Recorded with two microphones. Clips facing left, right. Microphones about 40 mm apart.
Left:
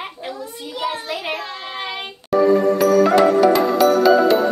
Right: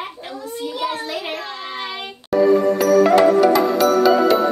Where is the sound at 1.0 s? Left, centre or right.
Centre.